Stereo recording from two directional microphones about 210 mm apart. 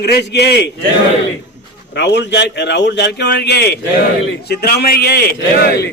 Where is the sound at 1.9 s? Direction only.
55° left (ahead or behind).